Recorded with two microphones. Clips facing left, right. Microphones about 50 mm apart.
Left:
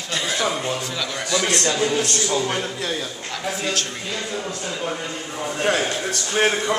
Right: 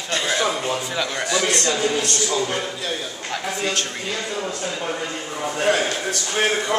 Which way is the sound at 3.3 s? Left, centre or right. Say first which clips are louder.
Right 1 dB; centre.